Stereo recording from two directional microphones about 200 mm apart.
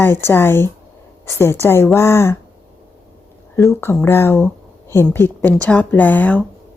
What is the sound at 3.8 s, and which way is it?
Speech, 10° left (ahead or behind).